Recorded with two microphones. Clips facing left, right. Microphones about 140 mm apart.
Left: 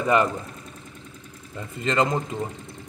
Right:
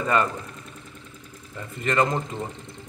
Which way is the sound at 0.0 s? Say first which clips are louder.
Left 2 dB; 15° left (ahead or behind).